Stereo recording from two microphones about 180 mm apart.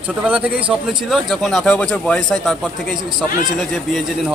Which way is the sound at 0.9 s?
Centre (ahead or behind).